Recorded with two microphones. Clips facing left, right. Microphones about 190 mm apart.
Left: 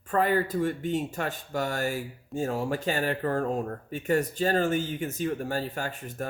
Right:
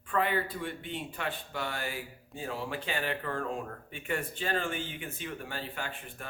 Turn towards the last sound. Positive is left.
turn(degrees=40)  # may be behind; listen again after turning